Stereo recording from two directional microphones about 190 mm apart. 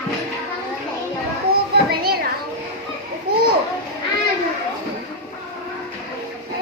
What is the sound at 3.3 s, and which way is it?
Children playing, 55° right (ahead or behind).